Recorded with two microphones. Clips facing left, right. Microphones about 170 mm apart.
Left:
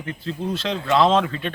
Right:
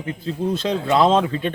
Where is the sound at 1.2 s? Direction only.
20° right (ahead or behind).